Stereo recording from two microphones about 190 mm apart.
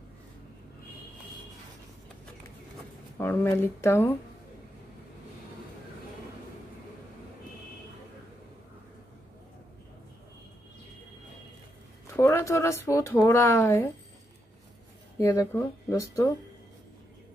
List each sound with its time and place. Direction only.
3.2 s speech: 10° left (ahead or behind)
12.2 s speech: 15° left (ahead or behind)
15.1 s speech: 15° left (ahead or behind)